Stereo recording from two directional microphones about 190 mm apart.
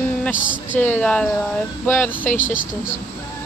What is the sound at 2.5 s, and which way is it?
Speech, 45° left (ahead or behind).